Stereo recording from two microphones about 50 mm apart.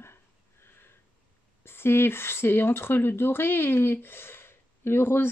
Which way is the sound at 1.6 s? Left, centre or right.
Left.